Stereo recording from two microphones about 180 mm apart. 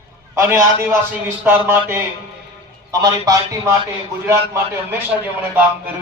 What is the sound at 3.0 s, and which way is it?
Speech, 20° right (ahead or behind).